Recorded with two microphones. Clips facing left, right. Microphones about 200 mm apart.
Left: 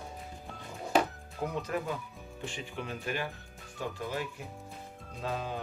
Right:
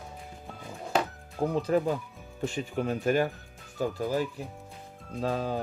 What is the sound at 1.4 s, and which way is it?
Speech, 30° right (ahead or behind).